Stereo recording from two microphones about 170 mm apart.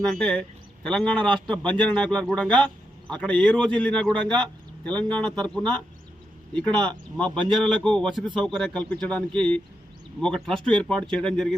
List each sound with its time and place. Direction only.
0.0 s a man's voice: 5° left (ahead or behind)